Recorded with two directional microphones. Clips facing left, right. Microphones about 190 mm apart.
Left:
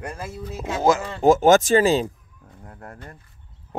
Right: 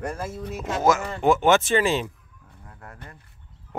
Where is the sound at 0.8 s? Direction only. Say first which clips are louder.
Left 2 dB; 30° left (ahead or behind).